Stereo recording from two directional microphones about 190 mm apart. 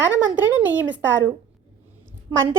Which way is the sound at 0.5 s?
10° right (ahead or behind).